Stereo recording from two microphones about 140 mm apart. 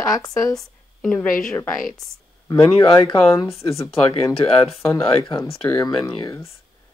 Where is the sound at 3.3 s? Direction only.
20° left (ahead or behind).